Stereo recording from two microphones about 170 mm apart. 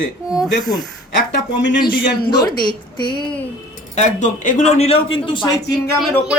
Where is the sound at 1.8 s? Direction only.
25° left (ahead or behind).